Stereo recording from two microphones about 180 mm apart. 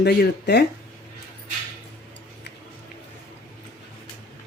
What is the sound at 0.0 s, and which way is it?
Speech, 65° left (ahead or behind).